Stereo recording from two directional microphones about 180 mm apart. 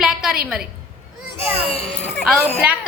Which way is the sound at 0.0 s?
Centre (ahead or behind).